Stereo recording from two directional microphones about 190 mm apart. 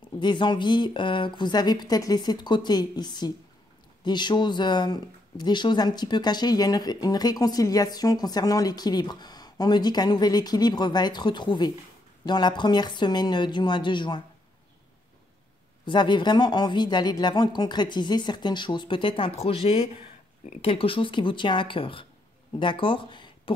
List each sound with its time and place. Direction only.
0.2 s speech: 25° left (ahead or behind)
15.8 s speech: 25° left (ahead or behind)